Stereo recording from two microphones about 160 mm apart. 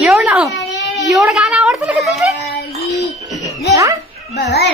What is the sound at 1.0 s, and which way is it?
Music, centre (ahead or behind).